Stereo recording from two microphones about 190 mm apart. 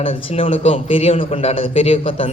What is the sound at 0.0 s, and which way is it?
A man's voice, 30° left (ahead or behind).